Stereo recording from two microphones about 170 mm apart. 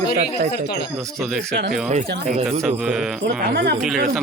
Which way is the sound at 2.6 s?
5° right (ahead or behind).